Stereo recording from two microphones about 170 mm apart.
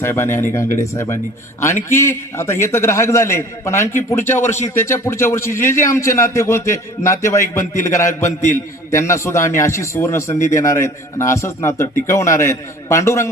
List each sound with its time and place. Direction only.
0.0 s speech: 15° left (ahead or behind)